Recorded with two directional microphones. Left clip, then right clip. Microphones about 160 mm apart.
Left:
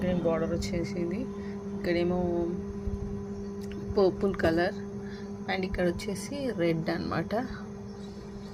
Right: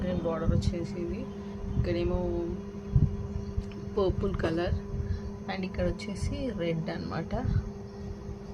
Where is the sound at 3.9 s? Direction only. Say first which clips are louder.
Left 4 dB; 30° left (ahead or behind).